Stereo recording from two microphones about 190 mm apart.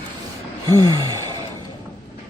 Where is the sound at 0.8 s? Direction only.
20° right (ahead or behind).